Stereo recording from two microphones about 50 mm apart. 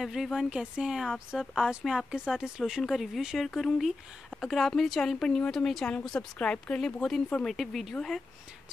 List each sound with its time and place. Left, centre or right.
0.0 s speech: centre
2.8 s speech: centre
3.4 s speech: centre
6.3 s speech: left